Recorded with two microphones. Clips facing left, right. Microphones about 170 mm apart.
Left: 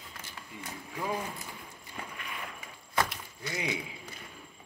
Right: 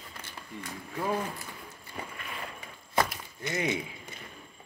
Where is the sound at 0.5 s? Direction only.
10° left (ahead or behind).